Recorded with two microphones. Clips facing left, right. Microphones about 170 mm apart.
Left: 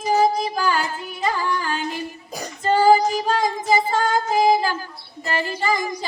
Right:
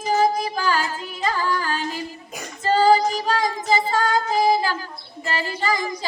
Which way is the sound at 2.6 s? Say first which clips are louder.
Left 1 dB; 20° left (ahead or behind).